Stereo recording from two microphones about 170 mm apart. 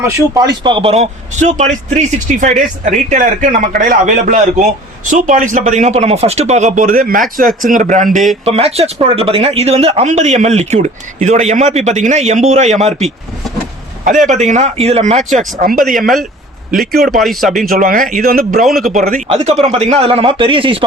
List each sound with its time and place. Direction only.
0.0 s a man's voice: 25° right (ahead or behind); by 8.2 s 45° right (ahead or behind)
8.4 s speech: 35° right (ahead or behind)
14.3 s speech: 45° right (ahead or behind)
15.3 s a man's voice: 50° right (ahead or behind)
15.8 s speech: centre (ahead or behind)
16.7 s speech: 65° right (ahead or behind)
17.0 s speech: centre (ahead or behind)
17.7 s speech: 55° right (ahead or behind)
18.9 s a man's voice: 50° right (ahead or behind)
19.6 s speech: 35° right (ahead or behind)